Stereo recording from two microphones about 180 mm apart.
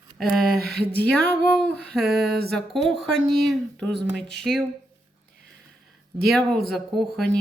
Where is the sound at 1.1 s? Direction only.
5° left (ahead or behind).